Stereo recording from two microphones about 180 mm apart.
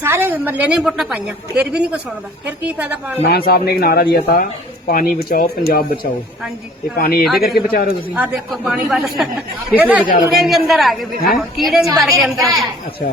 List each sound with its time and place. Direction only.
0.0 s a woman's voice: 15° right (ahead or behind)
3.2 s speech: 60° left (ahead or behind)
8.1 s a woman's voice: 5° right (ahead or behind)
12.4 s speech: 20° right (ahead or behind)